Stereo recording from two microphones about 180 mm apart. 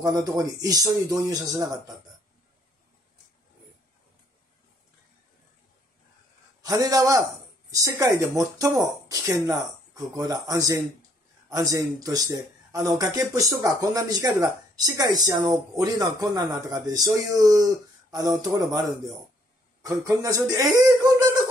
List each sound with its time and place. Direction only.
0.0 s a man's voice: 20° right (ahead or behind)
6.6 s a man's voice: 20° right (ahead or behind)